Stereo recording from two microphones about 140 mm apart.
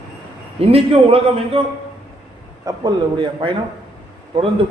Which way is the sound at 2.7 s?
30° right (ahead or behind).